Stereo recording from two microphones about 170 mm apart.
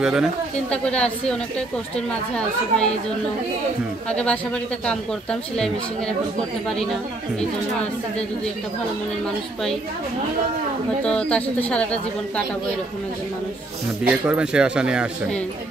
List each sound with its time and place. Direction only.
0.0 s a woman's voice: 5° right (ahead or behind)
4.1 s a woman's voice: 5° left (ahead or behind)
11.1 s a woman's voice: 5° left (ahead or behind)
14.0 s a woman's voice: 5° right (ahead or behind)